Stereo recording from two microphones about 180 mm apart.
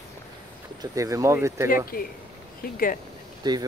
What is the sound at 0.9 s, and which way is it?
Speech, 15° right (ahead or behind).